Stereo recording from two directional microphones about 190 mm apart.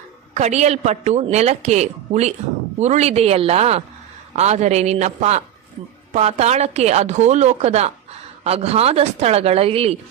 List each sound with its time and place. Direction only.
0.3 s speech: 35° right (ahead or behind)